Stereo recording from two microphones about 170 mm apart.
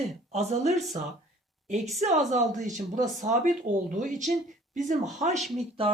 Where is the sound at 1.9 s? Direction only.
40° right (ahead or behind).